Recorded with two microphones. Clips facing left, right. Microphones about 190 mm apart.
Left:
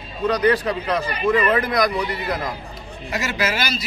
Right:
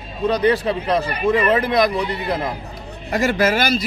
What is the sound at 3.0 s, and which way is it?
Speech, 50° right (ahead or behind).